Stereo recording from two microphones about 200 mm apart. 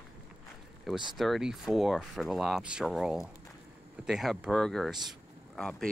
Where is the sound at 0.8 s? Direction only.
Centre (ahead or behind).